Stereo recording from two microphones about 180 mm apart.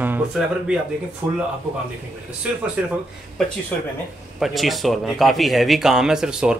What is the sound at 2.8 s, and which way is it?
Speech, 5° right (ahead or behind).